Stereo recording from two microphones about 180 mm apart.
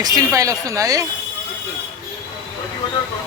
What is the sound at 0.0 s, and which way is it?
Speech, 20° right (ahead or behind).